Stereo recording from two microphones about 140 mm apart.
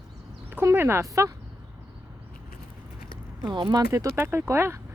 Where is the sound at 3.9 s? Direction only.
20° right (ahead or behind).